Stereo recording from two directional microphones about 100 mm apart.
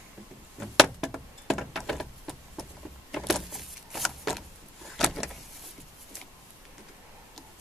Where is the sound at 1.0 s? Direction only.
Centre (ahead or behind).